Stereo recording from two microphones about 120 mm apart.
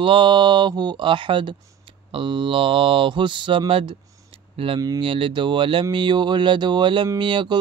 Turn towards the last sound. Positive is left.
turn(degrees=-40)  # may be behind; listen again after turning